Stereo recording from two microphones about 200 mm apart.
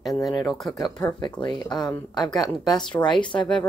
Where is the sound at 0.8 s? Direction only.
20° left (ahead or behind).